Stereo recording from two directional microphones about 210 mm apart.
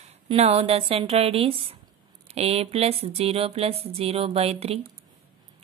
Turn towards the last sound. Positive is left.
turn(degrees=-30)  # may be behind; listen again after turning